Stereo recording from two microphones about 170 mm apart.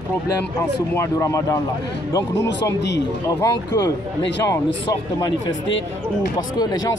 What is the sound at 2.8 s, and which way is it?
Speech, 90° left.